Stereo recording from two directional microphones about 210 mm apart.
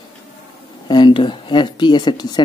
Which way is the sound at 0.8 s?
20° left (ahead or behind).